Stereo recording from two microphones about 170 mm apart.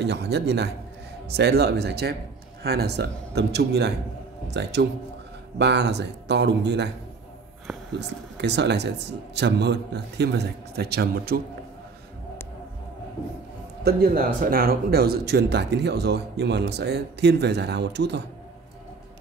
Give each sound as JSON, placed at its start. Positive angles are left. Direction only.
{"t": 0.0, "sound": "a man's voice", "side_deg": -80}
{"t": 8.4, "sound": "a man's voice", "side_deg": -90}
{"t": 13.8, "sound": "speech", "side_deg": -60}